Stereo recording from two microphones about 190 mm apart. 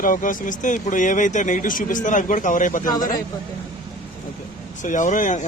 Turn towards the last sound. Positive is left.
turn(degrees=40)  # may be behind; listen again after turning